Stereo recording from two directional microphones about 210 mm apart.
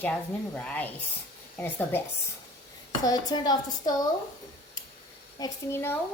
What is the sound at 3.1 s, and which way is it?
A woman's voice, 20° left (ahead or behind).